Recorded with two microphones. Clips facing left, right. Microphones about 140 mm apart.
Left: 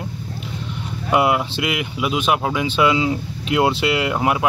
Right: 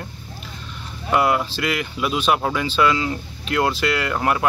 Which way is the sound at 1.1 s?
15° left (ahead or behind).